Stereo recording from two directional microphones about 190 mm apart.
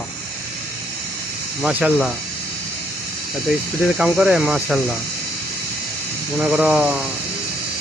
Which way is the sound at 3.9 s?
5° right (ahead or behind).